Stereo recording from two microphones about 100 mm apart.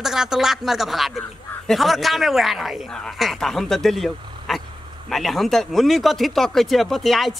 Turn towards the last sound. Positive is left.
turn(degrees=0)  # may be behind; listen again after turning